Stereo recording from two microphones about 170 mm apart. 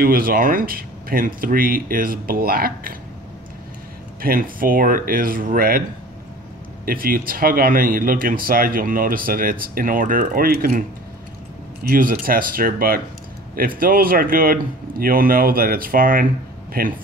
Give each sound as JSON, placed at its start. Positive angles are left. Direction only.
{"t": 0.0, "sound": "speech", "side_deg": -60}
{"t": 4.2, "sound": "speech", "side_deg": -55}
{"t": 6.9, "sound": "speech", "side_deg": -60}
{"t": 11.8, "sound": "speech", "side_deg": -55}